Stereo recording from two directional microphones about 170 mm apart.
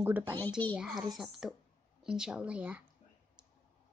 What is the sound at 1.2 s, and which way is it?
Speech, centre (ahead or behind).